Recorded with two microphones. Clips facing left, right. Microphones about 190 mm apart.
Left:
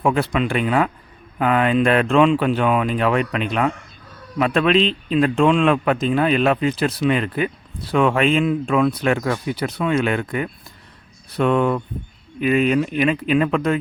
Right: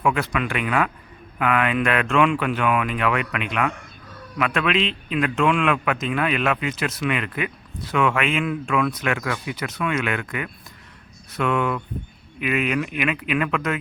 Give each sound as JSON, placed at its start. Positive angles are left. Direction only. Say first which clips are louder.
{"t": 0.0, "sound": "speech", "louder": "left 4 dB", "side_deg": 30}